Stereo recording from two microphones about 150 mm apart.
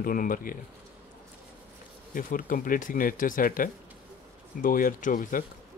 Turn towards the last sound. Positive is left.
turn(degrees=60)  # may be behind; listen again after turning